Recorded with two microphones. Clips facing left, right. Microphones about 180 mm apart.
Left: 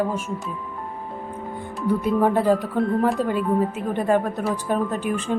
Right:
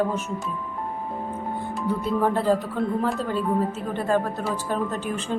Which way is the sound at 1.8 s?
15° left (ahead or behind).